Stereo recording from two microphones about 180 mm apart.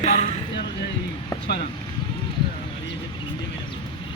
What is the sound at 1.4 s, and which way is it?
Speech, 70° left (ahead or behind).